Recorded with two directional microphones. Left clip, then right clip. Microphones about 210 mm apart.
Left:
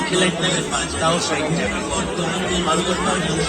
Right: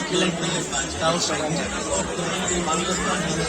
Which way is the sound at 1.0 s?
30° right (ahead or behind).